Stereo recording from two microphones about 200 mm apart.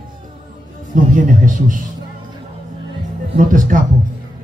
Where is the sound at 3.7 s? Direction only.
40° right (ahead or behind).